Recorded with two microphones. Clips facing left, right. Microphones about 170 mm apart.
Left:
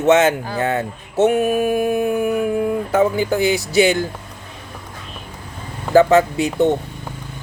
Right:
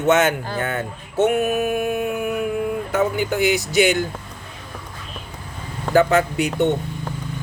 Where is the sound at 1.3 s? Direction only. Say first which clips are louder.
Left 4 dB; 30° left (ahead or behind).